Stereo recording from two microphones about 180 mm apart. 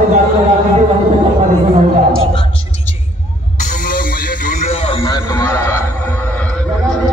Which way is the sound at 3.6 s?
50° left (ahead or behind).